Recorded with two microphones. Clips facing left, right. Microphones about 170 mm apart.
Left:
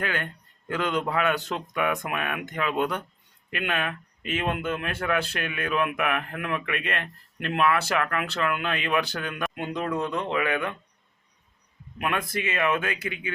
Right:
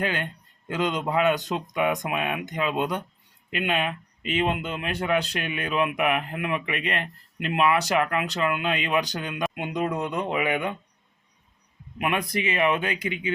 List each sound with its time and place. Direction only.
0.0 s speech: 15° right (ahead or behind)
11.9 s speech: 15° right (ahead or behind)